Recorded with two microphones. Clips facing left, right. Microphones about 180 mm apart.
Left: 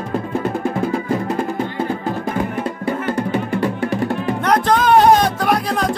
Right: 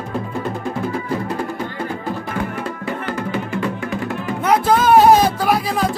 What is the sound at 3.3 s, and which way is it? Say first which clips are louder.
Music: left 3 dB; 30° left (ahead or behind).